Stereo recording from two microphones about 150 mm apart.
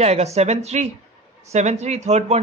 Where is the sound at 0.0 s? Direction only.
45° right (ahead or behind).